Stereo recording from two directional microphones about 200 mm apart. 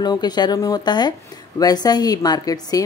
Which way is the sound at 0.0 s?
20° left (ahead or behind).